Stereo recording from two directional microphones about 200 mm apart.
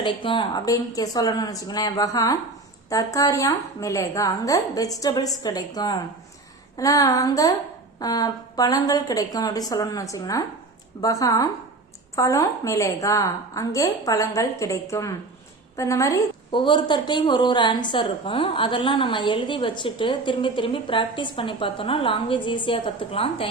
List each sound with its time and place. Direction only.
0.0 s a woman's voice: 25° left (ahead or behind)